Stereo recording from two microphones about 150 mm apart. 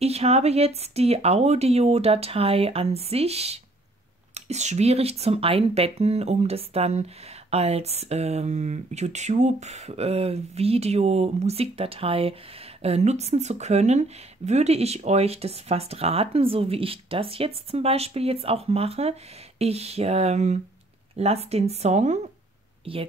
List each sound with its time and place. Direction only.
0.0 s speech: 45° right (ahead or behind)
22.9 s a woman's voice: 40° right (ahead or behind)